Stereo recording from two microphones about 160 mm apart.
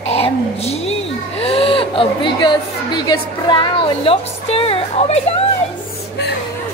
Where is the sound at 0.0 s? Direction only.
40° left (ahead or behind).